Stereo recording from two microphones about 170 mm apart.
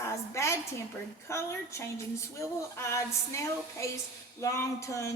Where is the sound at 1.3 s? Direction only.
15° left (ahead or behind).